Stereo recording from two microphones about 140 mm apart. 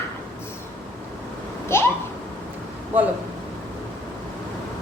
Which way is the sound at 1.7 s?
20° left (ahead or behind).